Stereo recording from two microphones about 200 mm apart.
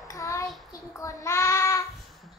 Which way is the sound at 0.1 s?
15° left (ahead or behind).